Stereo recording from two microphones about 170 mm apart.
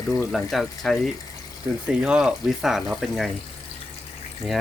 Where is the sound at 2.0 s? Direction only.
5° right (ahead or behind).